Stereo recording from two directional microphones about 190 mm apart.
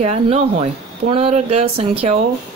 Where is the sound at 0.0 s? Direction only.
35° right (ahead or behind).